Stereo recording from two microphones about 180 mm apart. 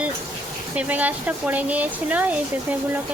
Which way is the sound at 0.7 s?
10° right (ahead or behind).